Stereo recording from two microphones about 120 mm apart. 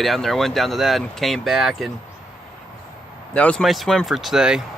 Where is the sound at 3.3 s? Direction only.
10° left (ahead or behind).